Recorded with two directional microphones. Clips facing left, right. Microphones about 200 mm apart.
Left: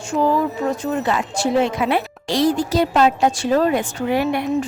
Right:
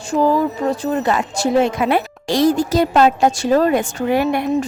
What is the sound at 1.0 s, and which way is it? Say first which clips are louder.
A woman's voice: right 2 dB; 45° right (ahead or behind).